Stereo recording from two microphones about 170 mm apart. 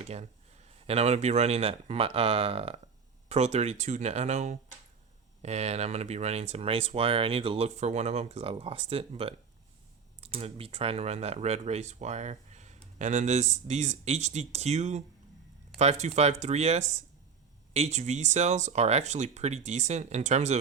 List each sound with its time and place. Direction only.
0.0 s speech: 40° right (ahead or behind)